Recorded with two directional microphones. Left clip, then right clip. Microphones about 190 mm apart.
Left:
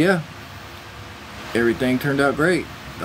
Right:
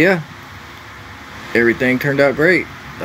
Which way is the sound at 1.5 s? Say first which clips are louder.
Right 6 dB; 5° right (ahead or behind).